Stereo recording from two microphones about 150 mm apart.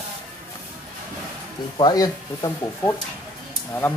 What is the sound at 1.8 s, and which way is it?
Speech, 25° left (ahead or behind).